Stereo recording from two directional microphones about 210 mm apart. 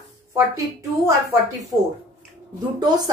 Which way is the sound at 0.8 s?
15° right (ahead or behind).